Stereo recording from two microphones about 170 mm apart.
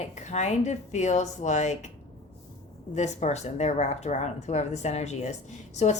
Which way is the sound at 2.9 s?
45° left (ahead or behind).